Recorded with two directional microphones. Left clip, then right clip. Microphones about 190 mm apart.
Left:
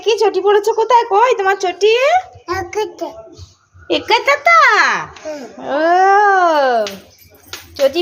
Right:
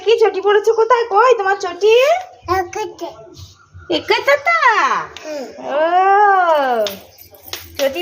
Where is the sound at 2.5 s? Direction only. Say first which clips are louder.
Right 1 dB; 55° left (ahead or behind).